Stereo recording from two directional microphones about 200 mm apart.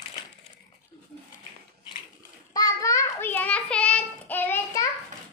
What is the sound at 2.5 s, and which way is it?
Child singing, 15° left (ahead or behind).